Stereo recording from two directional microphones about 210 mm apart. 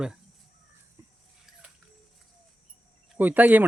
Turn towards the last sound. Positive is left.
turn(degrees=-10)  # may be behind; listen again after turning